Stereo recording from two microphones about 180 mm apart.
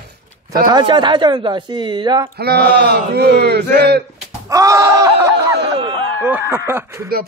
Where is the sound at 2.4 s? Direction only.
60° right (ahead or behind).